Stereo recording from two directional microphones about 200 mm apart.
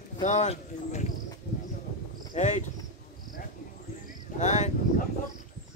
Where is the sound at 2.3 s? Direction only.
35° left (ahead or behind).